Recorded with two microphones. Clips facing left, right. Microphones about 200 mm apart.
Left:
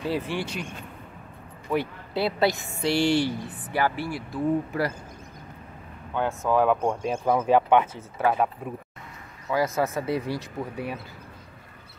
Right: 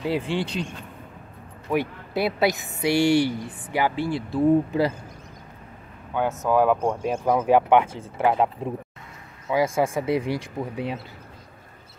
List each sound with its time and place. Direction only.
0.0 s speech: 20° right (ahead or behind)
1.7 s speech: 15° right (ahead or behind)
6.1 s speech: 10° right (ahead or behind)
9.5 s speech: 15° right (ahead or behind)